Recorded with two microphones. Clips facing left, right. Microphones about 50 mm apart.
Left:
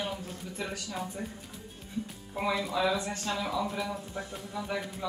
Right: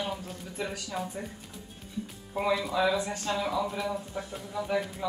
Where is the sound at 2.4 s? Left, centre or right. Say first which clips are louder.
Right 2 dB; centre.